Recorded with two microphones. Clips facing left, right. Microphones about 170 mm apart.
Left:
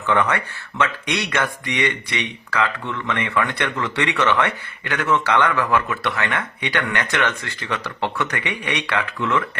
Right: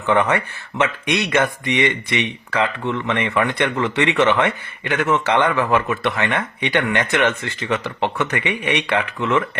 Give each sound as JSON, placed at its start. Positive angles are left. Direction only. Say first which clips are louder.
{"t": 0.0, "sound": "speech", "louder": "right 3 dB", "side_deg": -15}